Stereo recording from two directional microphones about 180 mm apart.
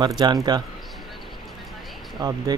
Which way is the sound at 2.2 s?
20° right (ahead or behind).